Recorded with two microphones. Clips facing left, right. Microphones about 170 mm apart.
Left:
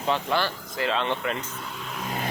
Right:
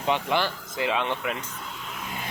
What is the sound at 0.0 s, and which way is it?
Speech, 15° right (ahead or behind).